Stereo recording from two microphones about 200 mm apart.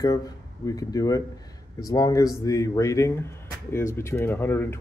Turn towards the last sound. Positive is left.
turn(degrees=10)  # may be behind; listen again after turning